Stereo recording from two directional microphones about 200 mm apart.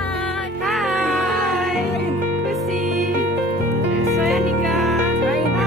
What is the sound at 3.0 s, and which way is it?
Music, 40° right (ahead or behind).